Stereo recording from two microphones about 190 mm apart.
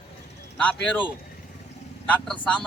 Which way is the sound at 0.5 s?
5° left (ahead or behind).